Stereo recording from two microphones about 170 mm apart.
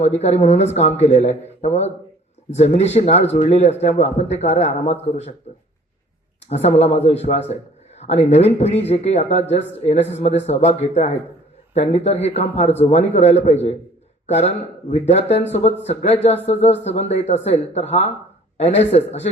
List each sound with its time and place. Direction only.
0.0 s speech: 40° left (ahead or behind)
6.5 s speech: 40° left (ahead or behind)
7.9 s a sound: 40° left (ahead or behind)
8.3 s speech: 40° left (ahead or behind)